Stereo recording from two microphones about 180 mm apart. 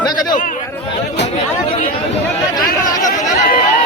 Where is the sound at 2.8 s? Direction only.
20° left (ahead or behind).